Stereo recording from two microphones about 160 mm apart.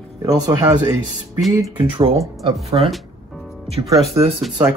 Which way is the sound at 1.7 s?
30° right (ahead or behind).